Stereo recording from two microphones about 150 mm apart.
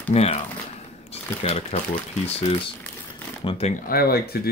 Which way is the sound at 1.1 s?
45° left (ahead or behind).